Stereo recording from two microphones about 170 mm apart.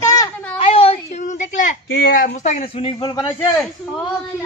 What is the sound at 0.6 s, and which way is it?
A woman's voice, 35° left (ahead or behind).